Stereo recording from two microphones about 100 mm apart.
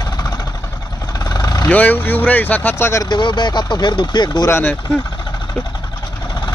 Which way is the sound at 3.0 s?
50° left (ahead or behind).